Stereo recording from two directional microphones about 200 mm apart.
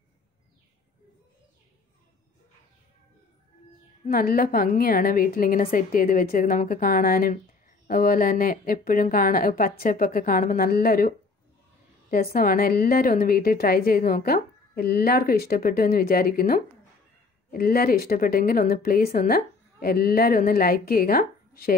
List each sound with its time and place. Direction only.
4.0 s a woman's voice: 45° left (ahead or behind)